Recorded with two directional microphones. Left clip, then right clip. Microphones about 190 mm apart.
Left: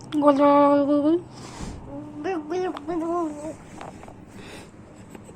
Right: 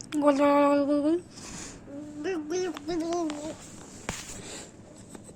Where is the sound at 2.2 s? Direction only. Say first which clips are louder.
Left 4 dB; 20° right (ahead or behind).